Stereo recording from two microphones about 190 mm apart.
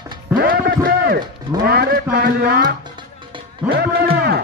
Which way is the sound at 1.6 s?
55° right (ahead or behind).